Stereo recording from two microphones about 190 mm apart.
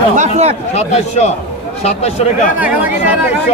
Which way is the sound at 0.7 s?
35° left (ahead or behind).